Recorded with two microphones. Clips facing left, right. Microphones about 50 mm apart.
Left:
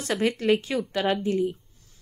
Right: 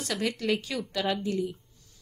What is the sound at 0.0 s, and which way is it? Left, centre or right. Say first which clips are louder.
A woman's voice: left 5 dB; left.